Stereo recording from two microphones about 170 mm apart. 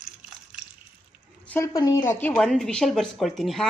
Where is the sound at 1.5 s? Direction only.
15° left (ahead or behind).